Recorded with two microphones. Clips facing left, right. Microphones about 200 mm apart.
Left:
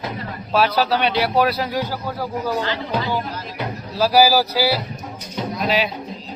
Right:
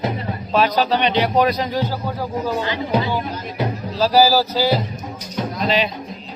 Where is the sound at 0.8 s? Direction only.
5° left (ahead or behind).